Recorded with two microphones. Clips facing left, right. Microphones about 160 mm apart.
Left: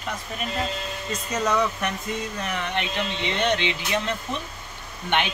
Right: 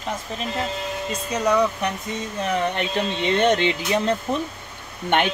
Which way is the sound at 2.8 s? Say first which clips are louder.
Right 4 dB; 45° right (ahead or behind).